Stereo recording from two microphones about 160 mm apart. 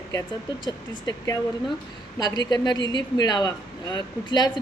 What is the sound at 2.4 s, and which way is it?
A man's voice, 25° left (ahead or behind).